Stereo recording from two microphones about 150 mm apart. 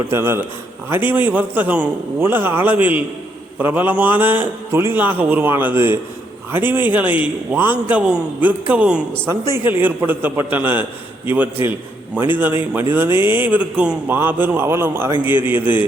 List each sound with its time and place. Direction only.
0.1 s speech: 15° right (ahead or behind)
12.1 s speech: 10° right (ahead or behind)